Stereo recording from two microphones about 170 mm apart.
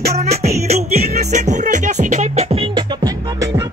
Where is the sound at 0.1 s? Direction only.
40° right (ahead or behind).